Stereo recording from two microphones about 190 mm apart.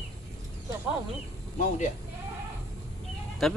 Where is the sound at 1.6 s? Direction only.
40° left (ahead or behind).